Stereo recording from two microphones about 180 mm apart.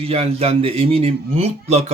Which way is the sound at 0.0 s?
35° right (ahead or behind).